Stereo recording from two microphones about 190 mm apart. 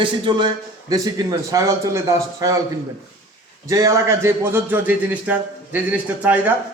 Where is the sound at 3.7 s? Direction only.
15° right (ahead or behind).